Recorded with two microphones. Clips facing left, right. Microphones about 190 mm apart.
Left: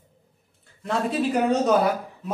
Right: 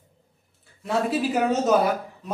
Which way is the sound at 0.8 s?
5° right (ahead or behind).